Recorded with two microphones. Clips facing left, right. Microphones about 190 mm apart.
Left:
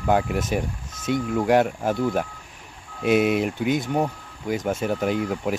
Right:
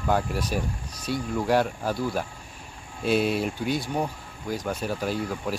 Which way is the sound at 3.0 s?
65° left (ahead or behind).